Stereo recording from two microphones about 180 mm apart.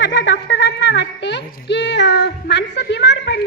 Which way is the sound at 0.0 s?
75° left (ahead or behind).